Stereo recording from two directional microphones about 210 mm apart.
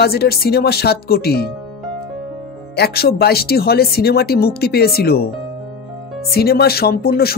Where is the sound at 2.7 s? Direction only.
50° left (ahead or behind).